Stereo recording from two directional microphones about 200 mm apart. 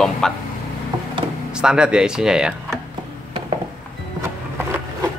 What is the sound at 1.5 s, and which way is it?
A man's voice, 5° right (ahead or behind).